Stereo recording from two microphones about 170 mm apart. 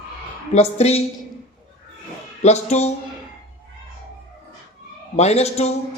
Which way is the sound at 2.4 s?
40° left (ahead or behind).